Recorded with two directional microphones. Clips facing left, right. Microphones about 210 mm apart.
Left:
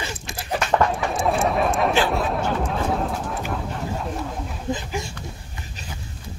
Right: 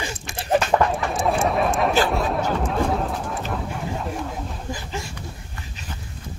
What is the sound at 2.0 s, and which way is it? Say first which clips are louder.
Chatter: even; centre (ahead or behind).